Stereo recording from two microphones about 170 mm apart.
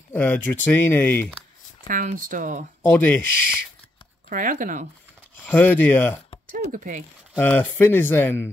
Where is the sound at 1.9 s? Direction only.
50° right (ahead or behind).